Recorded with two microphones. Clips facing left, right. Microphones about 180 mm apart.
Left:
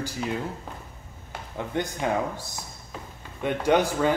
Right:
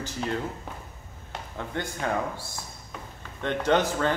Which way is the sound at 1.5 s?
15° left (ahead or behind).